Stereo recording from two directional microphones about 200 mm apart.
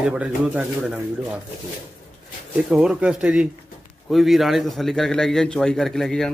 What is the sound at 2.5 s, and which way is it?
A man's voice, 5° right (ahead or behind).